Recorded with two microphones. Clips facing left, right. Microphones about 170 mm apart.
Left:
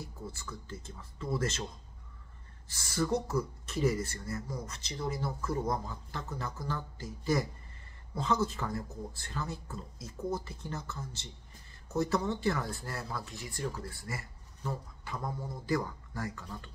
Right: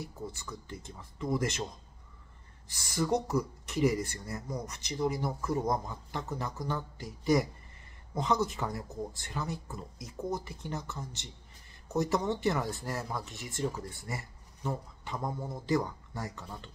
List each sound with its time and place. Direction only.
0.0 s speech: 15° right (ahead or behind)
2.7 s speech: 15° right (ahead or behind)